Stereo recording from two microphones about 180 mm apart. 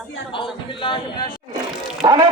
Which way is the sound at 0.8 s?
25° left (ahead or behind).